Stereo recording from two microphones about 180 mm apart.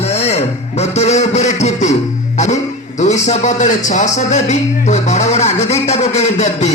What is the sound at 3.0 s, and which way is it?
A man's voice, 40° left (ahead or behind).